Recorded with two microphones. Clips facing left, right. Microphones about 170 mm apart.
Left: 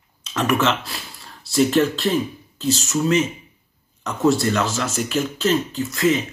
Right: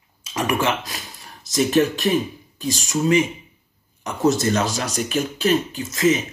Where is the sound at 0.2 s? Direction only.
10° right (ahead or behind).